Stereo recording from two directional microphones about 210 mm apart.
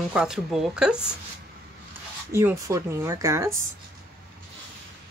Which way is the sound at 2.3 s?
10° right (ahead or behind).